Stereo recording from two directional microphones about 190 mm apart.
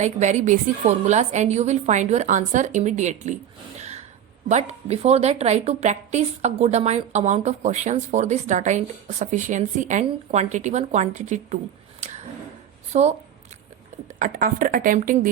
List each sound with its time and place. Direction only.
0.0 s a woman's voice: 35° right (ahead or behind)
3.8 s gasp: 35° right (ahead or behind)
4.4 s a woman's voice: 35° right (ahead or behind)
11.9 s a sound: 35° right (ahead or behind)
12.9 s speech: 35° right (ahead or behind)
14.2 s speech: 45° right (ahead or behind)